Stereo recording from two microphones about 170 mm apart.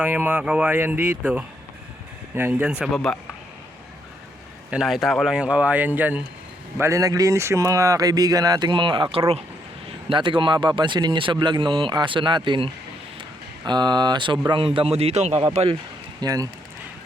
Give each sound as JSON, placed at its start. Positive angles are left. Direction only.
{"t": 0.0, "sound": "speech", "side_deg": -10}
{"t": 4.7, "sound": "speech", "side_deg": 0}
{"t": 16.2, "sound": "speech", "side_deg": -20}